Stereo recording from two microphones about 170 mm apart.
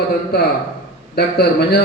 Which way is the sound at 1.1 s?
70° left (ahead or behind).